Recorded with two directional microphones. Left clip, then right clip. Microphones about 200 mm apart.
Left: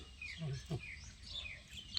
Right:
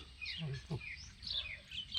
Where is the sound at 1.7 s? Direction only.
55° left (ahead or behind).